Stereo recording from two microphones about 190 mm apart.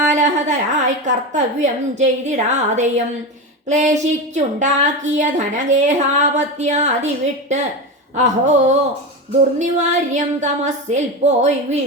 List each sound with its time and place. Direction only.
0.1 s a woman's voice: 40° right (ahead or behind)
8.1 s a woman's voice: 40° right (ahead or behind)